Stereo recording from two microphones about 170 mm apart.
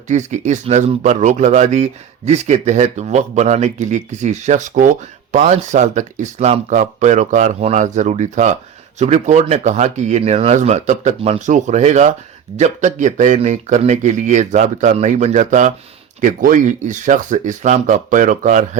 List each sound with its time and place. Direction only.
0.1 s speech: 45° right (ahead or behind)